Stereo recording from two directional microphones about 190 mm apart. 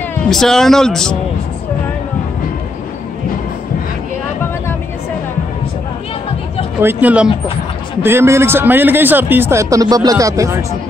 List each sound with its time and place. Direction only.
0.3 s speech: centre (ahead or behind)
6.8 s speech: 10° right (ahead or behind)